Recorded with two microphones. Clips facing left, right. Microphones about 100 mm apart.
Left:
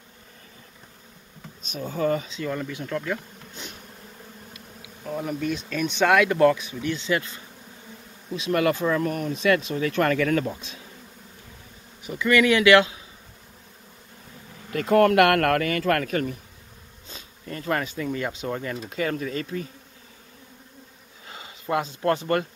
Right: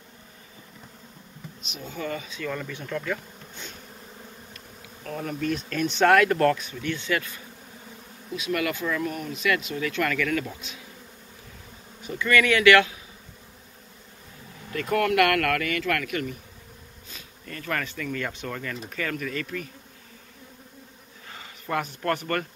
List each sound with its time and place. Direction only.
1.7 s speech: 40° left (ahead or behind)
2.5 s speech: 10° left (ahead or behind)
4.6 s speech: 10° left (ahead or behind); by 9.3 s 45° left (ahead or behind)
9.3 s speech: 30° left (ahead or behind)
12.0 s speech: 15° left (ahead or behind)
14.7 s speech: 30° left (ahead or behind)
17.1 s speech: 25° left (ahead or behind)
21.3 s sniff: 15° left (ahead or behind)
22.0 s speech: 20° left (ahead or behind)